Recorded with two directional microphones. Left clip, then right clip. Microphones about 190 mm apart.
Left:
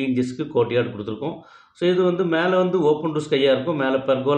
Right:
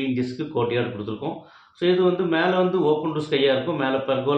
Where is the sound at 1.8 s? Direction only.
15° left (ahead or behind).